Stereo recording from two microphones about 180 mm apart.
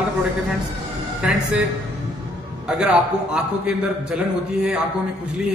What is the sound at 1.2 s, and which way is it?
Speech, 5° right (ahead or behind).